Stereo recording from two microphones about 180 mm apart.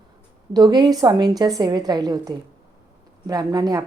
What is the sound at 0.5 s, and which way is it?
A woman's voice, 25° right (ahead or behind).